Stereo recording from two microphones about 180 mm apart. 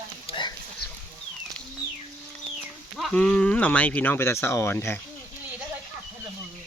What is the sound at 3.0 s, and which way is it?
Speech, 5° left (ahead or behind).